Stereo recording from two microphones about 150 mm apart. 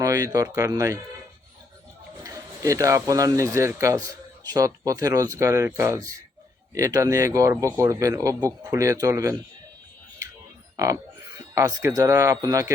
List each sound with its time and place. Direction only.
0.0 s a man's voice: 25° right (ahead or behind)
2.2 s a man's voice: 25° right (ahead or behind)
11.3 s a man's voice: 20° right (ahead or behind)